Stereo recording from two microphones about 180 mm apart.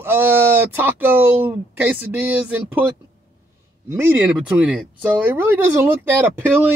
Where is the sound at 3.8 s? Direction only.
10° right (ahead or behind).